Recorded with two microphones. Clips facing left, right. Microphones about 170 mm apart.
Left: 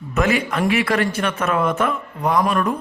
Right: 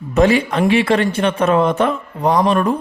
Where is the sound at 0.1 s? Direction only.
30° right (ahead or behind).